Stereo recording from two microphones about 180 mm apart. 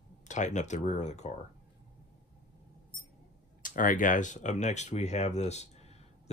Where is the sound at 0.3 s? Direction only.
40° left (ahead or behind).